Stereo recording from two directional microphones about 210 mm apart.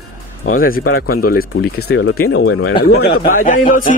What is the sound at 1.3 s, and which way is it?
Speech, 45° left (ahead or behind).